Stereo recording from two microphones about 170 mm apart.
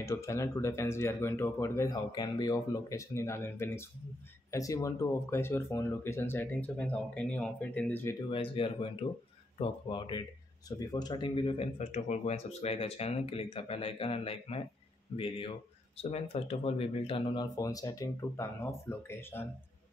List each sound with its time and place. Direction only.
0.0 s speech: 15° left (ahead or behind)
8.3 s speech: 35° left (ahead or behind); by 19.4 s 15° left (ahead or behind)